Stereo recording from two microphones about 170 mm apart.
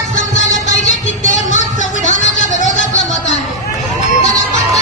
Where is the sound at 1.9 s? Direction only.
45° left (ahead or behind).